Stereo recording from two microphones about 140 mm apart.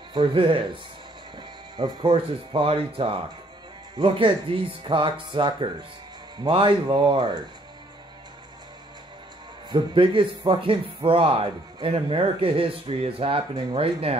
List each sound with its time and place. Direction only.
0.1 s speech: 35° right (ahead or behind)
1.8 s speech: 30° right (ahead or behind)
9.7 s speech: 35° right (ahead or behind)